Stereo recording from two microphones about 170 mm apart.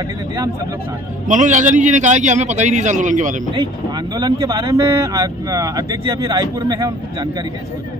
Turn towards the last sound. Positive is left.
turn(degrees=-25)  # may be behind; listen again after turning